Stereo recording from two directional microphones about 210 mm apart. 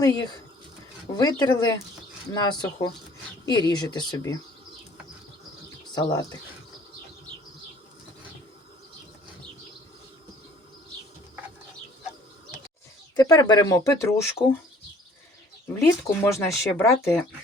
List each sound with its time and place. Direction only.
0.0 s speech: 20° left (ahead or behind)
5.9 s speech: 20° left (ahead or behind)
13.1 s speech: 15° left (ahead or behind)
15.7 s speech: 10° left (ahead or behind)